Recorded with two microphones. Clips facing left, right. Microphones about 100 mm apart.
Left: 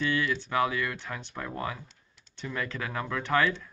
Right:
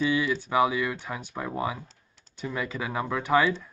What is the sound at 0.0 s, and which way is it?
Speech, 5° right (ahead or behind).